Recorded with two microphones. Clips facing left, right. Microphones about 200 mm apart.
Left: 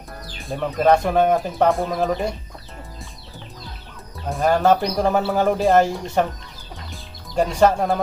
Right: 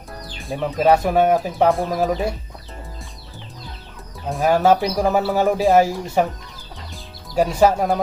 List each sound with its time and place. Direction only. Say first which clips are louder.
0.5 s speech: even; 5° right (ahead or behind)
4.3 s speech: right 1 dB; 5° right (ahead or behind)
6.9 s music: right 2 dB; 5° right (ahead or behind)